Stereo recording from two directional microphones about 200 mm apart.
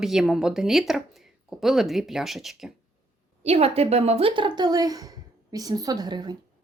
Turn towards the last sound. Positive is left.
turn(degrees=-20)  # may be behind; listen again after turning